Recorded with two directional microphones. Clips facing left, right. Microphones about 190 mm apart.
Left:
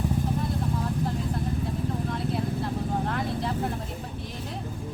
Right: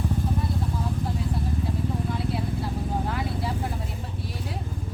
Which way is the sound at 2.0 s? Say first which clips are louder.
Even; 5° right (ahead or behind).